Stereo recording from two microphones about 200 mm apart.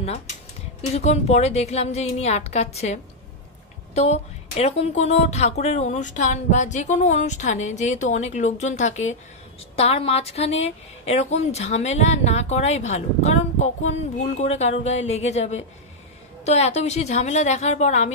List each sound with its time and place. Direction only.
0.9 s speech: 30° left (ahead or behind)